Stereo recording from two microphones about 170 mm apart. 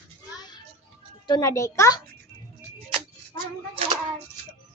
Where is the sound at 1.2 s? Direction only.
20° left (ahead or behind).